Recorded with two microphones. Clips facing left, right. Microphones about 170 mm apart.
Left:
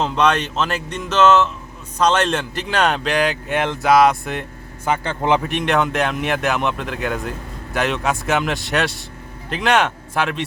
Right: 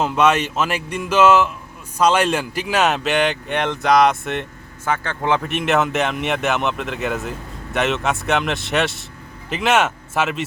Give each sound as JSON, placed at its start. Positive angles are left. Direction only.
{"t": 0.0, "sound": "speech", "side_deg": -5}
{"t": 4.9, "sound": "a man's voice", "side_deg": 20}
{"t": 5.5, "sound": "speech", "side_deg": -5}